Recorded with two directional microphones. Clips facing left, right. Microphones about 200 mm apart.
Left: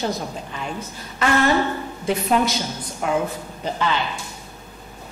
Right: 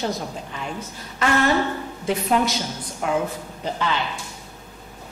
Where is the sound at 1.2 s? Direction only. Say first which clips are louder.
Left 1 dB; 15° left (ahead or behind).